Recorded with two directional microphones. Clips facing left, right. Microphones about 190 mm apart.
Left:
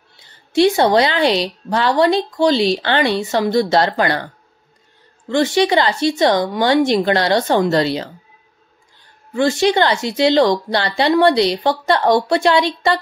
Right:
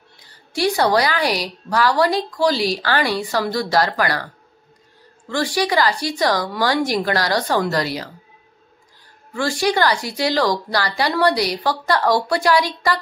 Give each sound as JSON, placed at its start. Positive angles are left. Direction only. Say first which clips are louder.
{"t": 0.2, "sound": "a woman's voice", "louder": "left 7 dB", "side_deg": 25}
{"t": 5.3, "sound": "a woman's voice", "louder": "left 5 dB", "side_deg": 25}
{"t": 9.3, "sound": "a woman's voice", "louder": "left 5 dB", "side_deg": 20}